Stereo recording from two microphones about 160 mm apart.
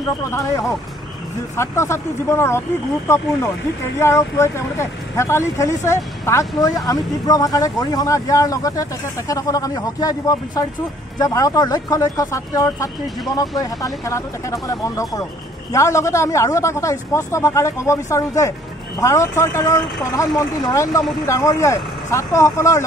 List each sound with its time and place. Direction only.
0.3 s speech: 20° left (ahead or behind)
4.0 s speech: 15° left (ahead or behind)